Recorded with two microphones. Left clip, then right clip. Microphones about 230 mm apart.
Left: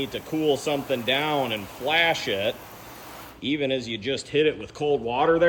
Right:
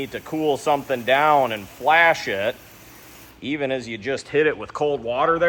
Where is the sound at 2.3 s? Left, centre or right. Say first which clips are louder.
Right 2 dB; right.